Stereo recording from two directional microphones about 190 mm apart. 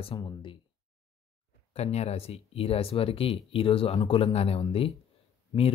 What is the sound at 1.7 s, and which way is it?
Speech, 35° left (ahead or behind).